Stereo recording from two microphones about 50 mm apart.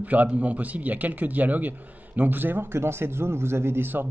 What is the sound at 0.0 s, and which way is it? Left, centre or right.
A man's voice, right.